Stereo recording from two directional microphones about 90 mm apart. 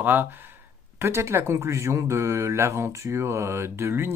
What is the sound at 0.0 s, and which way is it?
Speech, 20° right (ahead or behind).